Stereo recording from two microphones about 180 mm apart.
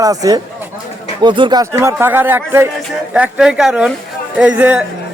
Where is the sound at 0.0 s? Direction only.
20° right (ahead or behind).